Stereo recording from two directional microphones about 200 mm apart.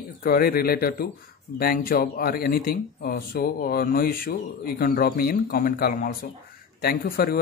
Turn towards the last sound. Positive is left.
turn(degrees=50)  # may be behind; listen again after turning